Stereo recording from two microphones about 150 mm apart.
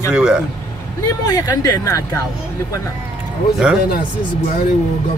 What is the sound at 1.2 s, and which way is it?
Speech, 25° left (ahead or behind).